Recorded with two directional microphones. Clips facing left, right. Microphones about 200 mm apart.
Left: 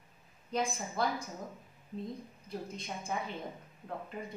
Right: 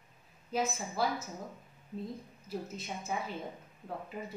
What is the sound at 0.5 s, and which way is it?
Speech, 5° right (ahead or behind).